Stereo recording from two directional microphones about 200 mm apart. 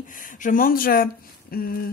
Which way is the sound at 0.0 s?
40° left (ahead or behind).